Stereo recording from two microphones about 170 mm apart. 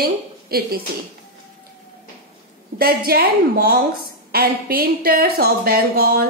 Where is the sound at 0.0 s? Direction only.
65° right (ahead or behind).